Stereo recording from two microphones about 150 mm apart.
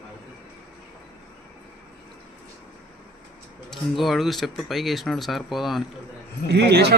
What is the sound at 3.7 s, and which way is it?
Speech, centre (ahead or behind).